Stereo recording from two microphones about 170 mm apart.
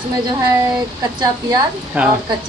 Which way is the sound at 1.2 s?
25° right (ahead or behind).